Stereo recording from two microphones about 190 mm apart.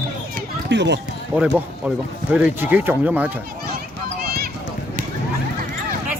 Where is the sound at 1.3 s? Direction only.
10° right (ahead or behind).